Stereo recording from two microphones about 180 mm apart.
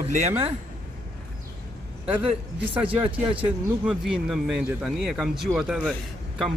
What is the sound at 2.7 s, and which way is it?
Speech, 10° right (ahead or behind).